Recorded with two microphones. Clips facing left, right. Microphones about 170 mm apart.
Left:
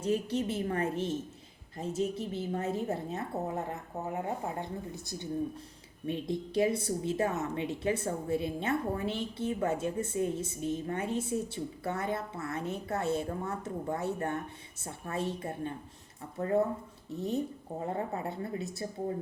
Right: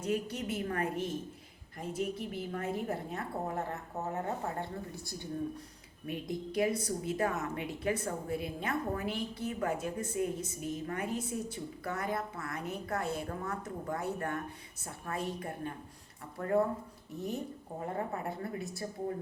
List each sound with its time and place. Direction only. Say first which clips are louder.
0.0 s a woman's voice: left 4 dB; 25° left (ahead or behind)